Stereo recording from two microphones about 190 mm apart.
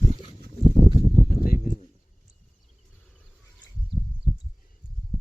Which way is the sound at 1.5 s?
45° left (ahead or behind).